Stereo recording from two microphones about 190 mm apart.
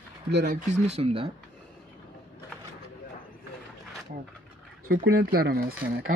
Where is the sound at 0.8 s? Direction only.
35° right (ahead or behind).